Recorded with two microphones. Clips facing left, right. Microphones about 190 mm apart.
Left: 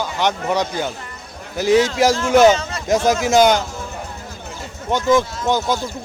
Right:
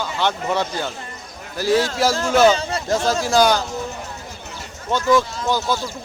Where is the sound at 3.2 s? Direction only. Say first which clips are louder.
Left 2 dB; 20° left (ahead or behind).